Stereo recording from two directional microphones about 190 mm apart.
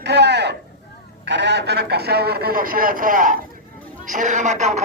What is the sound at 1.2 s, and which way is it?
A man's voice, 65° right (ahead or behind).